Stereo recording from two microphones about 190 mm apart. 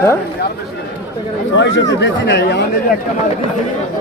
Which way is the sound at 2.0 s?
65° left (ahead or behind).